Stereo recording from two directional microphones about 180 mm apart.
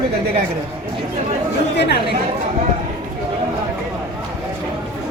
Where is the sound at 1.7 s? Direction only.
65° left (ahead or behind).